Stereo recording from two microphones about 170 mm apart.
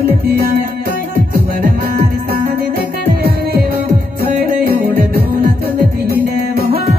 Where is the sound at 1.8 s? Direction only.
65° right (ahead or behind).